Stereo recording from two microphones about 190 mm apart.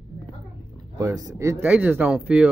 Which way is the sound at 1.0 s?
15° right (ahead or behind).